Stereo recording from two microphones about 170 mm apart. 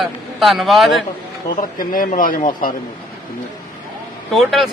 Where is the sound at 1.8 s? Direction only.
55° left (ahead or behind).